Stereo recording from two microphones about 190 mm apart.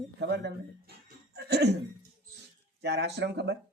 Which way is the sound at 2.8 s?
65° right (ahead or behind).